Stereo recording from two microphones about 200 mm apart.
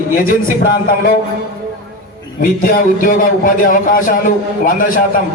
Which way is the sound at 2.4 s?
45° left (ahead or behind).